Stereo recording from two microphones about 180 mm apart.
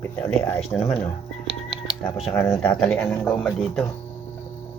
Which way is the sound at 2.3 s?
5° left (ahead or behind).